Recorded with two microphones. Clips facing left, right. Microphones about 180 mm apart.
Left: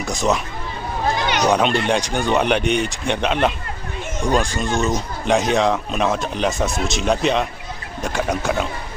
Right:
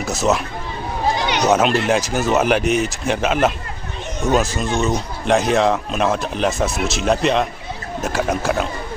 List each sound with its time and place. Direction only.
0.0 s speech: 5° right (ahead or behind)
1.5 s speech: 5° right (ahead or behind)